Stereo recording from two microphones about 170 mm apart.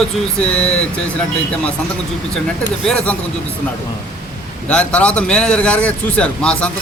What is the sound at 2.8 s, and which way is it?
Speech, 5° left (ahead or behind).